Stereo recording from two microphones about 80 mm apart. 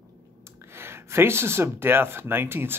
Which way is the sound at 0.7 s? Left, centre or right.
Right.